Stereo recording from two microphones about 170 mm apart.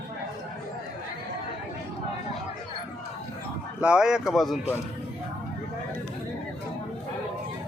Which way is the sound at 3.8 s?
5° right (ahead or behind).